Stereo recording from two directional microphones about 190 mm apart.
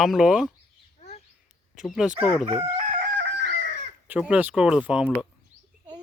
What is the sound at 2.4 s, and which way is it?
Crowing, 30° right (ahead or behind).